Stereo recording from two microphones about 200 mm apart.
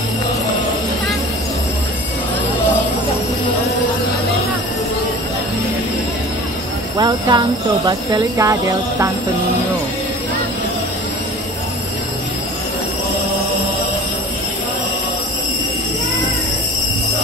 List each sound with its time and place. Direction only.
7.0 s speech: 20° right (ahead or behind)